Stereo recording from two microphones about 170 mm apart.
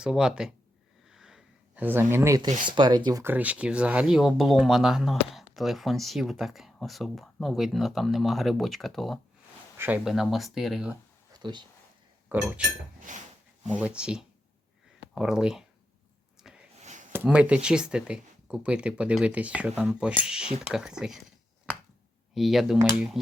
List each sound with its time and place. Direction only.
0.0 s speech: 5° right (ahead or behind)
1.1 s a sound: 5° right (ahead or behind)
2.6 s speech: 25° right (ahead or behind)
3.3 s speech: 10° right (ahead or behind)
9.7 s speech: 10° right (ahead or behind)
11.3 s speech: 25° right (ahead or behind)
12.3 s speech: 5° right (ahead or behind)
13.1 s speech: 50° right (ahead or behind)
13.7 s speech: 5° right (ahead or behind)
16.4 s a sound: 5° right (ahead or behind)
16.8 s a sound: 45° right (ahead or behind)
17.2 s speech: 5° right (ahead or behind)
22.4 s speech: centre (ahead or behind)